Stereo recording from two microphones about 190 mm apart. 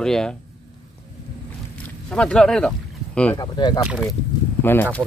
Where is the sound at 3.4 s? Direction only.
20° left (ahead or behind).